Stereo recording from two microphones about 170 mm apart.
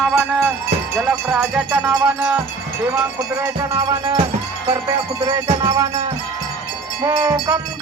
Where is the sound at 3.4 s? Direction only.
15° right (ahead or behind).